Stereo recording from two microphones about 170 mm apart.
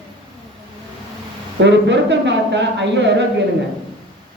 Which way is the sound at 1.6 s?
90° right.